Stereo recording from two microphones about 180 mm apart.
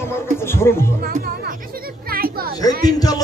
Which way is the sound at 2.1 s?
55° right (ahead or behind).